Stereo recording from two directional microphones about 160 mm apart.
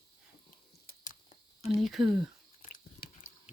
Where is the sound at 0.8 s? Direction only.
60° left (ahead or behind).